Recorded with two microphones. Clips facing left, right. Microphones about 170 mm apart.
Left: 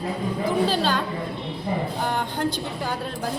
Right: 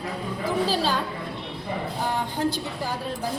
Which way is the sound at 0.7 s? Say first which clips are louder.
Left 1 dB; 5° right (ahead or behind).